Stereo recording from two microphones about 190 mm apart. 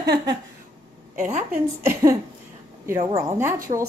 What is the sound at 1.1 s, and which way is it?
Speech, 40° right (ahead or behind).